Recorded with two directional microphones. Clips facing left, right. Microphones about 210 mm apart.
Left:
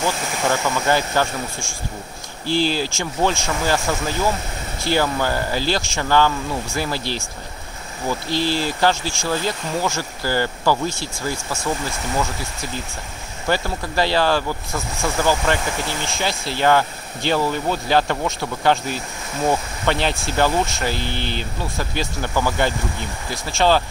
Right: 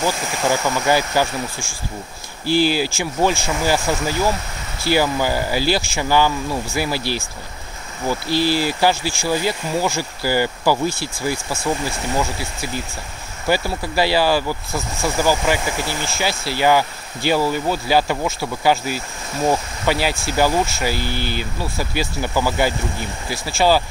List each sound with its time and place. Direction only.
0.0 s speech: 10° right (ahead or behind)
8.3 s speech: 10° right (ahead or behind)
13.5 s speech: 10° right (ahead or behind)